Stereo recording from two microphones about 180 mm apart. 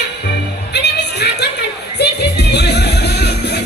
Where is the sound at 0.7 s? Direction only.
65° left (ahead or behind).